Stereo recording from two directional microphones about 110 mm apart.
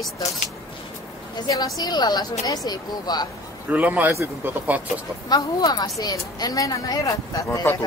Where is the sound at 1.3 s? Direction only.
35° left (ahead or behind).